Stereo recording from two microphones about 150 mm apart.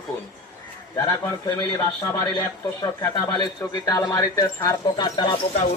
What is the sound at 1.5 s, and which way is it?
Speech, 25° left (ahead or behind).